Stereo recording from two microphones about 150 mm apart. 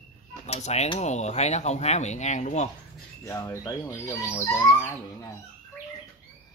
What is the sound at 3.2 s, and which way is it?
Speech, 20° left (ahead or behind).